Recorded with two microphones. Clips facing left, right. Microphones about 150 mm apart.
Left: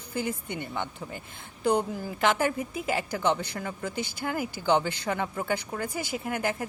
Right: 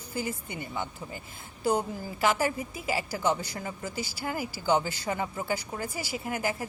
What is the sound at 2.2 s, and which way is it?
Speech, 55° left (ahead or behind).